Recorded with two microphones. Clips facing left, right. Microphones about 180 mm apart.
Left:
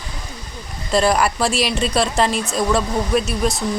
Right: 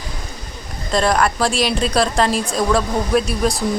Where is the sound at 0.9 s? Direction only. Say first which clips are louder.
Even; 5° left (ahead or behind).